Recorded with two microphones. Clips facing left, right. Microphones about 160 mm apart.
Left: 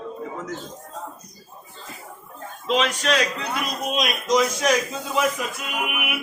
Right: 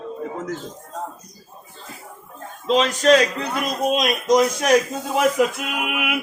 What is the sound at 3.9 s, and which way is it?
Speech, 45° right (ahead or behind).